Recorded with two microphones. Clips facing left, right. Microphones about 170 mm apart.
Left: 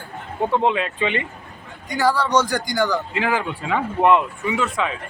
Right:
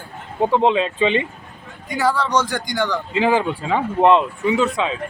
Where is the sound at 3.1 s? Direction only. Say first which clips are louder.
Right 5 dB; 25° right (ahead or behind).